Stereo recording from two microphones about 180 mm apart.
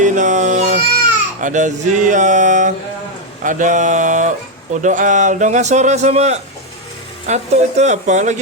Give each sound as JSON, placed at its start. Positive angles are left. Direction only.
{"t": 0.0, "sound": "cat", "side_deg": -45}
{"t": 1.4, "sound": "a man's voice", "side_deg": -45}